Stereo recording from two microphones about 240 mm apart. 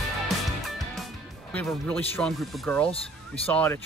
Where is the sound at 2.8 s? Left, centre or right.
Left.